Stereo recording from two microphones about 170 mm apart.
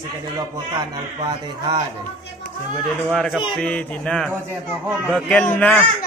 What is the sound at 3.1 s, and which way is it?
A child's voice, 5° left (ahead or behind).